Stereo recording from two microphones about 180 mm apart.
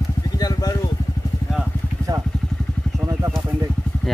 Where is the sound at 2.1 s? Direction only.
20° right (ahead or behind).